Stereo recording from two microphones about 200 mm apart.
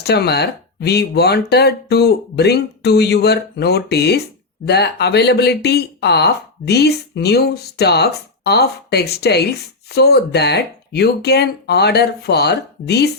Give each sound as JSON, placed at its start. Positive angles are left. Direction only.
{"t": 0.0, "sound": "speech", "side_deg": 55}